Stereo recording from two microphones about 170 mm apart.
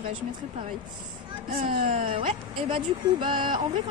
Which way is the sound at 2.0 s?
30° right (ahead or behind).